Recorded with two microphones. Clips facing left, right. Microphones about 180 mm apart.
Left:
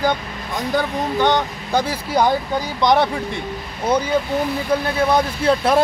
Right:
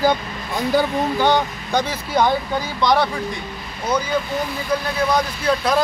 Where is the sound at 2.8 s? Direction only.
20° left (ahead or behind).